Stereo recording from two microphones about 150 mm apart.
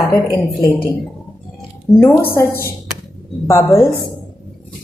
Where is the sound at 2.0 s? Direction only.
15° left (ahead or behind).